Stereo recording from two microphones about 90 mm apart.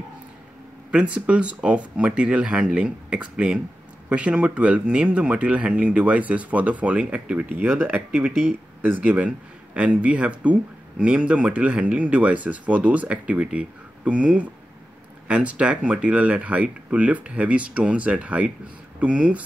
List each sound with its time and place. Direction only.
1.1 s speech: 15° right (ahead or behind)